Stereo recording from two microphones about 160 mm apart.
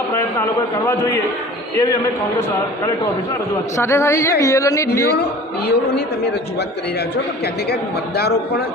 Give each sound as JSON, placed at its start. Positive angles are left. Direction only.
{"t": 1.7, "sound": "speech", "side_deg": 20}
{"t": 3.8, "sound": "speech", "side_deg": 15}
{"t": 5.6, "sound": "a man's voice", "side_deg": 90}